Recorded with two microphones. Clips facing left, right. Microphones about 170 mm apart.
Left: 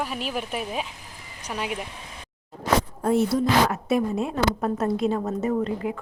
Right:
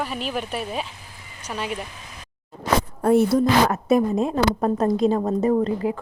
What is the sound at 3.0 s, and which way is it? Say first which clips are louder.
Speech: right 7 dB; 60° right (ahead or behind).